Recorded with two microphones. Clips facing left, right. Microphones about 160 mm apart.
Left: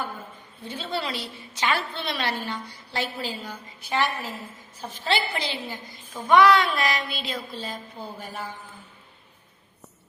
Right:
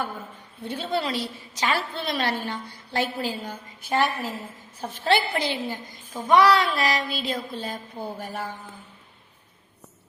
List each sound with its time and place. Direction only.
0.6 s a woman's voice: 55° right (ahead or behind)
6.3 s a woman's voice: 35° right (ahead or behind); by 8.4 s 60° right (ahead or behind)